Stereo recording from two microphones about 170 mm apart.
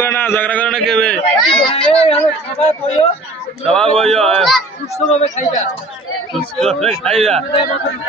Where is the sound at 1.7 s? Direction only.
35° left (ahead or behind).